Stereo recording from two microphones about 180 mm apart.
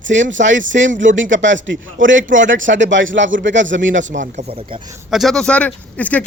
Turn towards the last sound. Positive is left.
turn(degrees=10)  # may be behind; listen again after turning